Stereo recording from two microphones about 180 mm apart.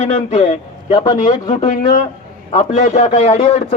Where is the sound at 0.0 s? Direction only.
40° left (ahead or behind).